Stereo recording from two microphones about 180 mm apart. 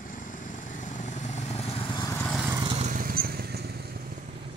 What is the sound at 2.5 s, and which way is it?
Vehicle, 30° right (ahead or behind).